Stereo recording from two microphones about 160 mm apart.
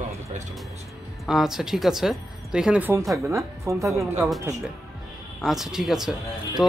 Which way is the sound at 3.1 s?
Centre (ahead or behind).